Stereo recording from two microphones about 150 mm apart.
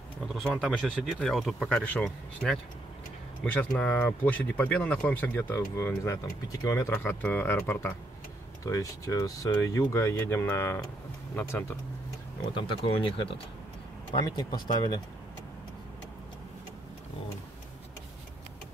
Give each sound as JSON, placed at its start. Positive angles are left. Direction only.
{"t": 0.3, "sound": "speech", "side_deg": 0}
{"t": 12.5, "sound": "speech", "side_deg": 35}